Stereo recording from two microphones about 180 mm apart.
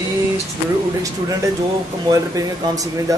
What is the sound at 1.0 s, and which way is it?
Speech, 20° right (ahead or behind).